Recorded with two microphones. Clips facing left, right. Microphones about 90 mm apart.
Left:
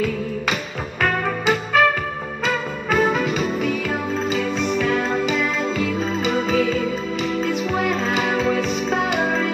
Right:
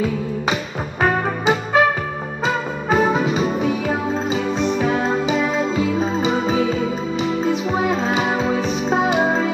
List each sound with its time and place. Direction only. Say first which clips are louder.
1.0 s music: right 2 dB; 20° right (ahead or behind)